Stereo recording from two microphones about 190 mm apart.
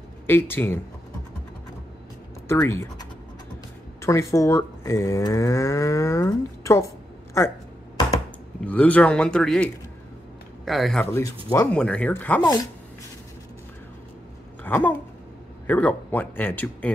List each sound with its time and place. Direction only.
0.3 s livestock: 10° left (ahead or behind)
2.4 s speech: 15° left (ahead or behind)
4.0 s livestock: 15° left (ahead or behind)
8.6 s livestock: 10° left (ahead or behind)
10.6 s a man's voice: centre (ahead or behind)
11.1 s livestock: 15° left (ahead or behind)
14.6 s speech: 10° left (ahead or behind)
15.6 s livestock: 10° left (ahead or behind)